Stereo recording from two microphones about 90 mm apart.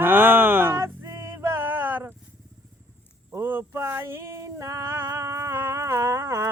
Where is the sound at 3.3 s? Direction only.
25° right (ahead or behind).